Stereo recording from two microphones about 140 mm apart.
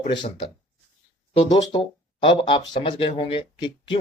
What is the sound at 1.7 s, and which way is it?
Speech, 35° left (ahead or behind).